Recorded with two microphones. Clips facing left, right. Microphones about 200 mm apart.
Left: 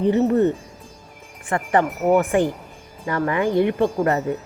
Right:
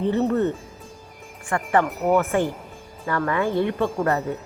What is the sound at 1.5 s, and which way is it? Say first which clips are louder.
Speech: left 1 dB; 20° left (ahead or behind).